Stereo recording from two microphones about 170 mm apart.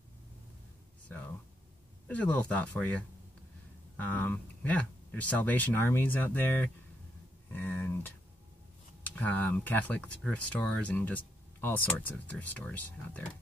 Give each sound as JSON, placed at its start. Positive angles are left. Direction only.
{"t": 1.0, "sound": "speech", "side_deg": 10}
{"t": 7.5, "sound": "a sound", "side_deg": 10}
{"t": 9.0, "sound": "speech", "side_deg": 10}